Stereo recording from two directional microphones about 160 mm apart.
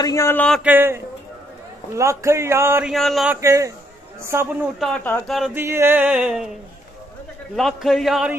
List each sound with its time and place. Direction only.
0.0 s speech: 20° left (ahead or behind)
0.7 s music: 15° right (ahead or behind)
2.9 s a man's voice: centre (ahead or behind)
3.3 s a man's voice: 20° right (ahead or behind)
4.3 s music: 15° right (ahead or behind)
4.7 s a man's voice: centre (ahead or behind)
5.5 s music: 15° right (ahead or behind)
7.5 s a man's voice: centre (ahead or behind)